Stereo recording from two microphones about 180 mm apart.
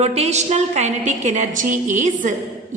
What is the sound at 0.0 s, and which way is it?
A woman's voice, 35° right (ahead or behind).